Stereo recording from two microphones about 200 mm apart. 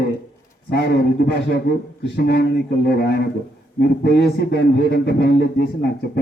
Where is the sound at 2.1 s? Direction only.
50° left (ahead or behind).